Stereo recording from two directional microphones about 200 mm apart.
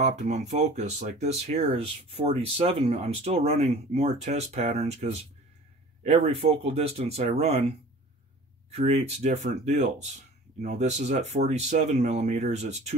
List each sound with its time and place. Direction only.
0.0 s speech: 35° right (ahead or behind)